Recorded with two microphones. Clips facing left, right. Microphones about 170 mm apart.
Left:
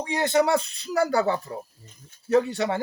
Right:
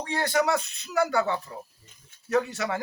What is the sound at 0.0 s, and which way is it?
Speech, 20° left (ahead or behind).